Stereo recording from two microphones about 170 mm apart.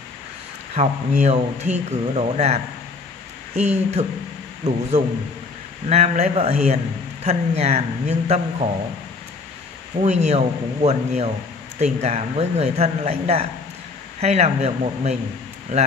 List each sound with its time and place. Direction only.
0.7 s speech: 40° right (ahead or behind)
5.9 s speech: 40° right (ahead or behind)
10.0 s speech: 40° right (ahead or behind)